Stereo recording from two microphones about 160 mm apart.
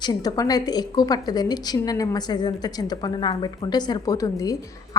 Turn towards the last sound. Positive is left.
turn(degrees=20)  # may be behind; listen again after turning